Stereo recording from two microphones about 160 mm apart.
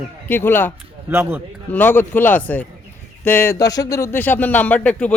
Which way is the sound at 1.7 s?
10° left (ahead or behind).